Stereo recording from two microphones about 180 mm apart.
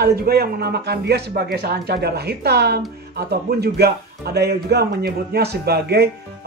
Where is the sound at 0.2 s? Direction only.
60° right (ahead or behind).